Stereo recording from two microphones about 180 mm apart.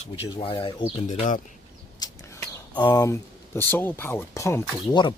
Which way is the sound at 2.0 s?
20° left (ahead or behind).